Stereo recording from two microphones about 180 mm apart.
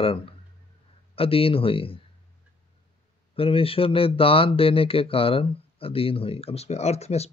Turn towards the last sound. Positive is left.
turn(degrees=35)  # may be behind; listen again after turning